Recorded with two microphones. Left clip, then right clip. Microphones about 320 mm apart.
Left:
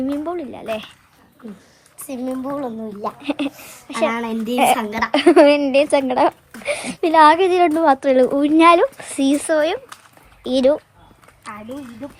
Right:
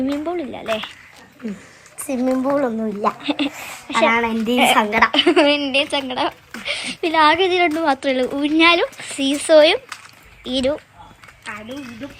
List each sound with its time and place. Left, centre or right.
0.0 s speech: centre
2.4 s speech: right
3.2 s a woman's voice: centre